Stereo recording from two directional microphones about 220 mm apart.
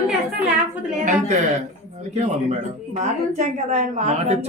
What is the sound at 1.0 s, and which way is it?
A woman's voice, 35° right (ahead or behind).